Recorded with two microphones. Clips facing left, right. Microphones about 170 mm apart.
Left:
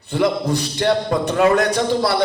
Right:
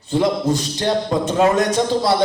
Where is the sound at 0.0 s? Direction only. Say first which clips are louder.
Right 1 dB; 60° left (ahead or behind).